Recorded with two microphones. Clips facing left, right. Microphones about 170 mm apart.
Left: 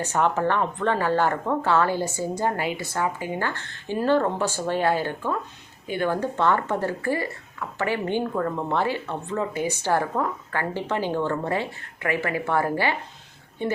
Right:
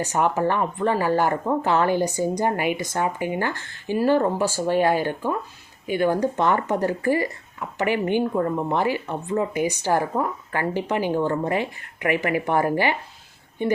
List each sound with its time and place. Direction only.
0.0 s speech: 10° right (ahead or behind)